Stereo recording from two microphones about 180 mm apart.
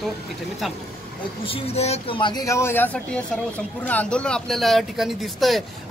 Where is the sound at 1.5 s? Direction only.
35° left (ahead or behind).